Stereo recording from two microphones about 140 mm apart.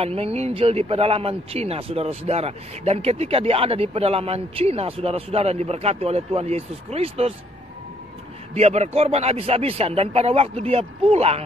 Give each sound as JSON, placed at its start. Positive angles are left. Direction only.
{"t": 0.0, "sound": "speech", "side_deg": -45}
{"t": 8.5, "sound": "speech", "side_deg": -50}